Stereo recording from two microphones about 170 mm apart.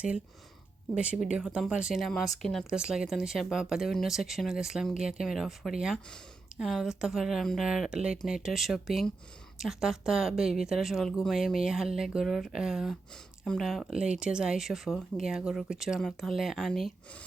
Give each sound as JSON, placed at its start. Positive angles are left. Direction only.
{"t": 0.9, "sound": "speech", "side_deg": -5}